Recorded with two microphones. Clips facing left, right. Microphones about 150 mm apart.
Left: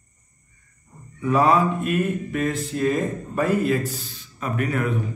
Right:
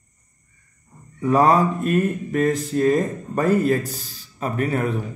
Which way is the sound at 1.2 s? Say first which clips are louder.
Right 2 dB; 40° right (ahead or behind).